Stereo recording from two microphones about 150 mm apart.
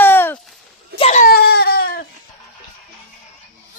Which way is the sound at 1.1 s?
70° left (ahead or behind).